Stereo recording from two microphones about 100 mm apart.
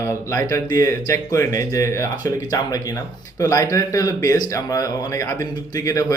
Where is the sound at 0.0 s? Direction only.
30° left (ahead or behind).